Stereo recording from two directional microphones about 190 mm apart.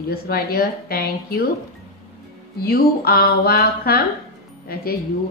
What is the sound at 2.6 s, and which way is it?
Speech, 55° left (ahead or behind).